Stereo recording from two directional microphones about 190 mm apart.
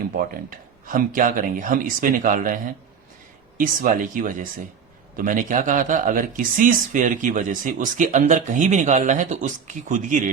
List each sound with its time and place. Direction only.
0.2 s a man's voice: 45° right (ahead or behind)